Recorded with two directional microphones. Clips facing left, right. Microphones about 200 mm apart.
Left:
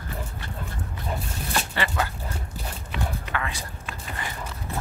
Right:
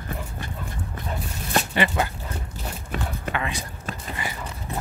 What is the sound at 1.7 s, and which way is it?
Speech, 20° right (ahead or behind).